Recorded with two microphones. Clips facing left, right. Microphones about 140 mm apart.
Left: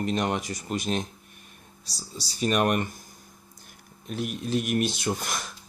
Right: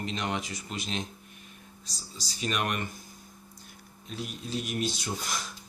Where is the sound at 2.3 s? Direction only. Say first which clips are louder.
Left 7 dB; 45° left (ahead or behind).